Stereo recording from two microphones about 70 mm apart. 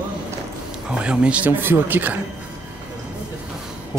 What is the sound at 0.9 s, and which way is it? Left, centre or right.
Speech, centre.